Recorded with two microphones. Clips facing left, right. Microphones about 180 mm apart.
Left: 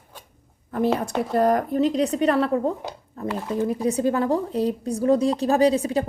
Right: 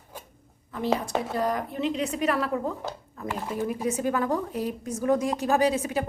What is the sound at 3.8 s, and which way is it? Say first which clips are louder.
A woman's voice: left 4 dB; 35° left (ahead or behind).